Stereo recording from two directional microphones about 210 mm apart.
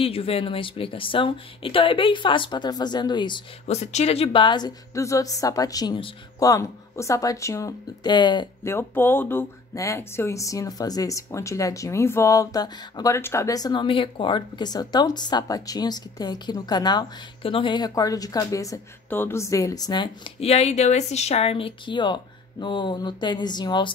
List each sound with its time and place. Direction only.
0.0 s a woman's voice: 25° left (ahead or behind)